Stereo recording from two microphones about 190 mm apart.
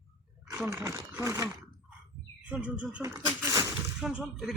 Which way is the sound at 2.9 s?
10° right (ahead or behind).